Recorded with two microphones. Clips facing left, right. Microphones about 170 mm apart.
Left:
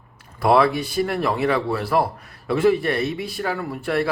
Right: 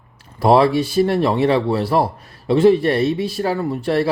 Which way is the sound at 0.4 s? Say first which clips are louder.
Right 4 dB; 30° right (ahead or behind).